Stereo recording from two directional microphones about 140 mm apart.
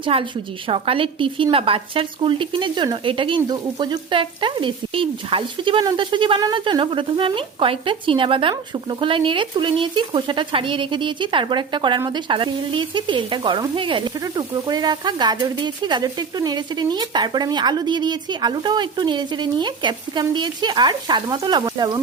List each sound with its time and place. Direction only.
0.0 s speech: 40° right (ahead or behind)